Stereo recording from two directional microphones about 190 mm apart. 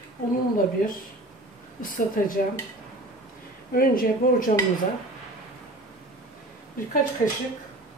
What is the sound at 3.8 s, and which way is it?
Speech, 50° left (ahead or behind).